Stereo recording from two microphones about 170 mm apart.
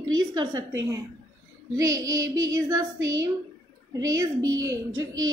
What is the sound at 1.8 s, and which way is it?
A woman's voice, 20° right (ahead or behind).